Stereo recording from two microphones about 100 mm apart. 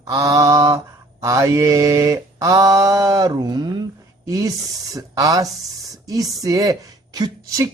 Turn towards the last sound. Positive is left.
turn(degrees=-40)  # may be behind; listen again after turning